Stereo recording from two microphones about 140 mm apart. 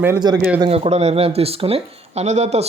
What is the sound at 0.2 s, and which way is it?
Speech, 30° right (ahead or behind).